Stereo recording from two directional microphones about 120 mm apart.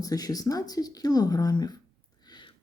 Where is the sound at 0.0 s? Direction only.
30° left (ahead or behind).